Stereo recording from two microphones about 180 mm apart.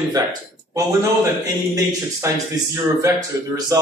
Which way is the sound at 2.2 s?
15° right (ahead or behind).